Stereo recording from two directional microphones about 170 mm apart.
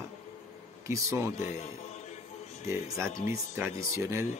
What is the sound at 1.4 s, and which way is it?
Speech, 45° left (ahead or behind).